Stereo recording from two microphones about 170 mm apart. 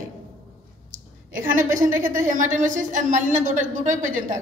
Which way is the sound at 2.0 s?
50° right (ahead or behind).